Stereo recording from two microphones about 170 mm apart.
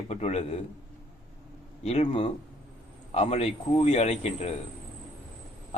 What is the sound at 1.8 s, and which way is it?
A man's voice, 40° left (ahead or behind).